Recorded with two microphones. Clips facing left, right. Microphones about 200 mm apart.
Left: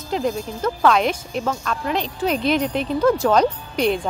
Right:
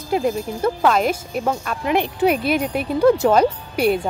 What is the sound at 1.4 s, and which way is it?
Speech, 15° right (ahead or behind).